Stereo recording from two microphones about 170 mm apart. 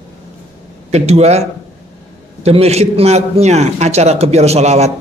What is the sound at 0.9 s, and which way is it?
Speech, 40° right (ahead or behind).